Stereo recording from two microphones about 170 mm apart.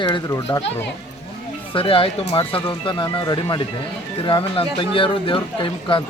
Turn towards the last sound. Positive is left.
turn(degrees=30)  # may be behind; listen again after turning